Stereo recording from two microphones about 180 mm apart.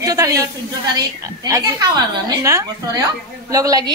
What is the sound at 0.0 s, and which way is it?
A woman's voice, 20° right (ahead or behind).